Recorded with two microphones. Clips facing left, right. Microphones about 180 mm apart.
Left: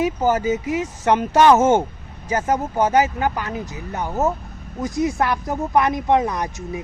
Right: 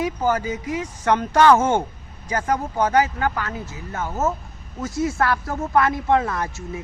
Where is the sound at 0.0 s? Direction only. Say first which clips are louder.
Left 3 dB; 15° left (ahead or behind).